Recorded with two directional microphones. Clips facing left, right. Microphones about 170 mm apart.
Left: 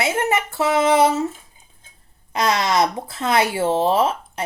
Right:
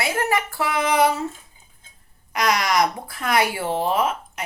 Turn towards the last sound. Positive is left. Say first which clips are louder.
# left 3 dB
turn(degrees=30)  # may be behind; listen again after turning